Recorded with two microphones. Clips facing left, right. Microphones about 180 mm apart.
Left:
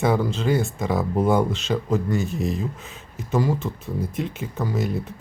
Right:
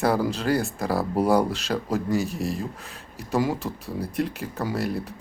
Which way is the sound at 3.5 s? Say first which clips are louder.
Left 2 dB; 35° right (ahead or behind).